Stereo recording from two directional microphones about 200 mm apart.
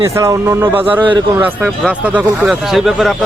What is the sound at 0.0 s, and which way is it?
A man's voice, 15° right (ahead or behind).